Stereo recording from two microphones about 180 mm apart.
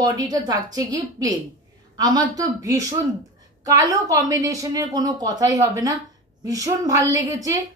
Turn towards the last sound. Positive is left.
turn(degrees=-20)  # may be behind; listen again after turning